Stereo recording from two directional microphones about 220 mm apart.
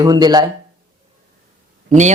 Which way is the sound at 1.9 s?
35° right (ahead or behind).